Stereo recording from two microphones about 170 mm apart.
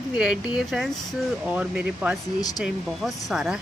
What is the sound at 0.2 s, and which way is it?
A woman's voice, 5° right (ahead or behind).